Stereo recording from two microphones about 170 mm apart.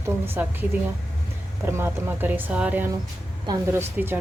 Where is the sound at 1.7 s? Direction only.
15° right (ahead or behind).